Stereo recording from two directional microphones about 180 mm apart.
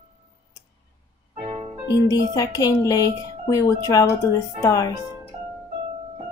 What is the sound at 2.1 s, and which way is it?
A woman's voice, 20° left (ahead or behind).